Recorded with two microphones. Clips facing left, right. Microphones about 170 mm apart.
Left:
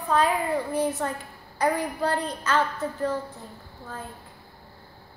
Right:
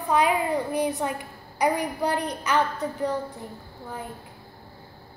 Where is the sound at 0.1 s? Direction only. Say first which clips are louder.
Right 1 dB; 15° right (ahead or behind).